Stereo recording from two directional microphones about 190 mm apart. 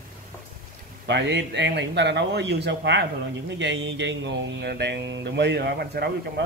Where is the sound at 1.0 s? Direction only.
65° right (ahead or behind).